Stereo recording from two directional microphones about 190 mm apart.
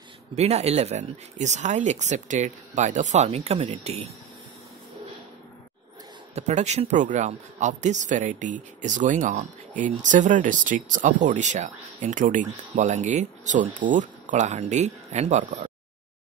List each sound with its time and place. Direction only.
0.3 s speech: 35° right (ahead or behind)
6.3 s speech: 35° right (ahead or behind)